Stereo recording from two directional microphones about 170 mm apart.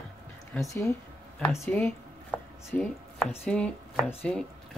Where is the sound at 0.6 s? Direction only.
20° left (ahead or behind).